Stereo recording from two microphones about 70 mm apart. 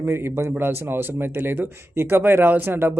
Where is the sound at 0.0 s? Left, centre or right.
Right.